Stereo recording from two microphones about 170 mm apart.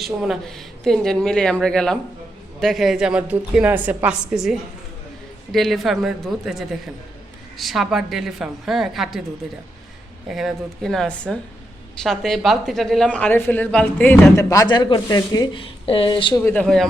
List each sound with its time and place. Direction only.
0.0 s a woman's voice: centre (ahead or behind)
10.2 s a woman's voice: centre (ahead or behind)
14.5 s a woman's voice: 25° left (ahead or behind)
16.3 s speech: 15° left (ahead or behind)
16.6 s a woman's voice: centre (ahead or behind)